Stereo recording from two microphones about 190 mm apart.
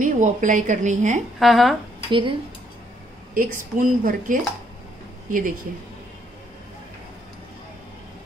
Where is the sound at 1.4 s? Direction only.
Centre (ahead or behind).